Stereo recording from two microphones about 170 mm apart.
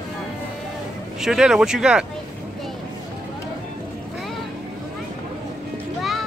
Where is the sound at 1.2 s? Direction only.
5° right (ahead or behind).